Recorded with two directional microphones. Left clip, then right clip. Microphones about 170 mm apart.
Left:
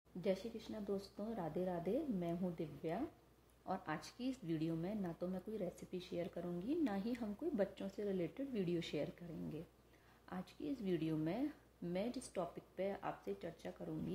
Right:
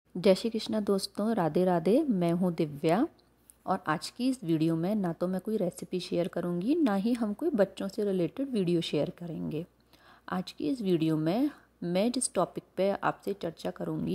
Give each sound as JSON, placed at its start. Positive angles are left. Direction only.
{"t": 0.2, "sound": "speech", "side_deg": -55}
{"t": 3.6, "sound": "speech", "side_deg": -40}